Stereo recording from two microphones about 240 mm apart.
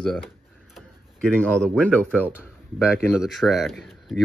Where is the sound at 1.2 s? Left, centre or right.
Centre.